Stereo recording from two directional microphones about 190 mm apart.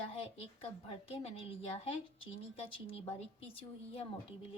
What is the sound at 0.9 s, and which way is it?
A woman's voice, 30° left (ahead or behind).